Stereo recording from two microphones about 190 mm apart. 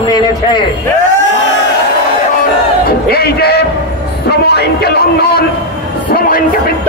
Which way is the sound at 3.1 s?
55° left (ahead or behind).